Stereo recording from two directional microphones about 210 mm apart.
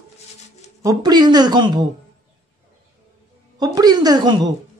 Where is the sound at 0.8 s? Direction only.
20° right (ahead or behind).